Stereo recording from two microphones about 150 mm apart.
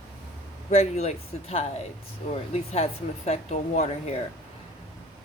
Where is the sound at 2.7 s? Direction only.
45° left (ahead or behind).